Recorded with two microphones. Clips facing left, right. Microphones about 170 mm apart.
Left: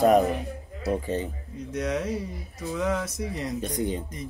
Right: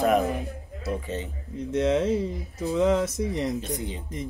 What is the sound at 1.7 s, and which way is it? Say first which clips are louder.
Speech: right 6 dB; 25° right (ahead or behind).